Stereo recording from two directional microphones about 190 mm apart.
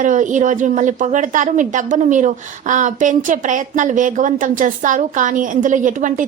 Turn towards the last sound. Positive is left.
turn(degrees=-40)  # may be behind; listen again after turning